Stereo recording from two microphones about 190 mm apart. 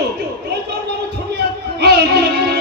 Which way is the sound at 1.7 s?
60° right (ahead or behind).